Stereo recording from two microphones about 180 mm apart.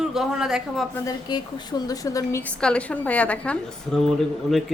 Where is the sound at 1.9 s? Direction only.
20° left (ahead or behind).